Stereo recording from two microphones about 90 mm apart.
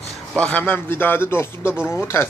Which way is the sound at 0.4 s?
15° left (ahead or behind).